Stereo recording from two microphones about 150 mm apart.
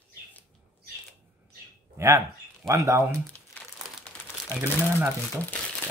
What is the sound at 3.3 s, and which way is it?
Crumpling, 10° left (ahead or behind).